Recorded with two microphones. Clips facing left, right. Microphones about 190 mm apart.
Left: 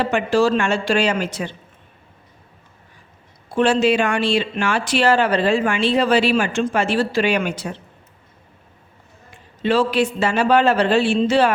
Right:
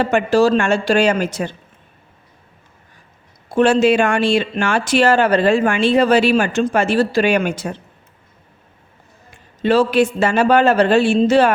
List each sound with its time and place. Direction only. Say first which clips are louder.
0.0 s speech: right 3 dB; 45° right (ahead or behind)
3.5 s speech: right 3 dB; 45° right (ahead or behind)
9.6 s speech: right 4 dB; 45° right (ahead or behind)